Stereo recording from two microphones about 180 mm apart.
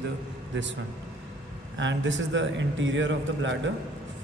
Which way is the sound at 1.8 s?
90° right.